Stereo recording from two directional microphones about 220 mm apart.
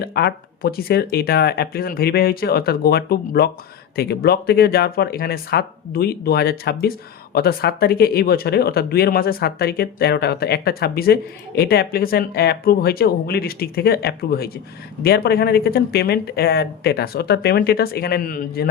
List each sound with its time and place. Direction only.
0.0 s speech: 45° left (ahead or behind)